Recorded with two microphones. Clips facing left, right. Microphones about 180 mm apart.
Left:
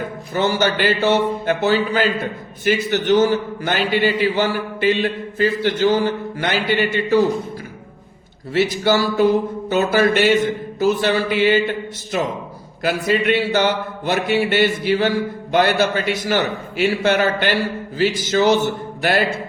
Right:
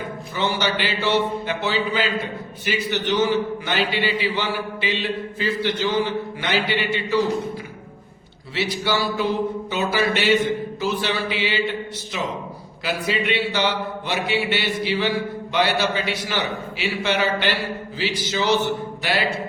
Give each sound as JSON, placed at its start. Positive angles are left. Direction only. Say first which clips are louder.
{"t": 0.3, "sound": "a man's voice", "louder": "left 5 dB", "side_deg": 50}
{"t": 8.5, "sound": "a man's voice", "louder": "left 6 dB", "side_deg": 45}